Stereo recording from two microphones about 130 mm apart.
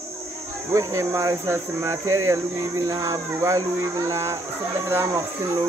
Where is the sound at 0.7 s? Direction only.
25° right (ahead or behind).